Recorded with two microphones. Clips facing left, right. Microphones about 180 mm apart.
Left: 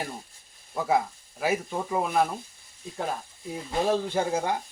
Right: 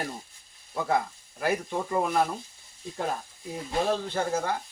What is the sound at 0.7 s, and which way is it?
Speech, 5° left (ahead or behind).